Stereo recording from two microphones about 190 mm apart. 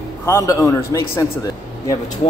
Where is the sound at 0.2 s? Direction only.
15° left (ahead or behind).